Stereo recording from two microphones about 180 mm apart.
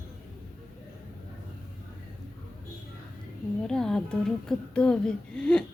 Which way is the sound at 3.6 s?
5° left (ahead or behind).